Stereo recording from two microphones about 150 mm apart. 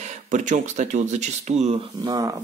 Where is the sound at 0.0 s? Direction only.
55° right (ahead or behind).